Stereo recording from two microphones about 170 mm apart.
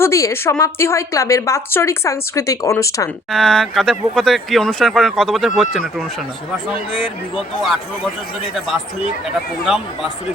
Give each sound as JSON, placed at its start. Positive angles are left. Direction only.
{"t": 0.0, "sound": "speech", "side_deg": 15}
{"t": 3.3, "sound": "speech", "side_deg": 0}
{"t": 7.3, "sound": "speech", "side_deg": 0}
{"t": 9.7, "sound": "speech", "side_deg": 0}